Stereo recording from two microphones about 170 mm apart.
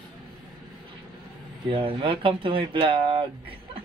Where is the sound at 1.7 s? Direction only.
30° right (ahead or behind).